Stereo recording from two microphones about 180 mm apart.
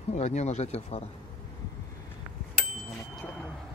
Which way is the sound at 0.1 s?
40° left (ahead or behind).